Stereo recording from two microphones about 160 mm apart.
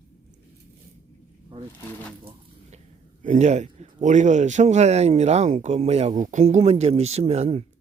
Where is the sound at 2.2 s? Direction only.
45° right (ahead or behind).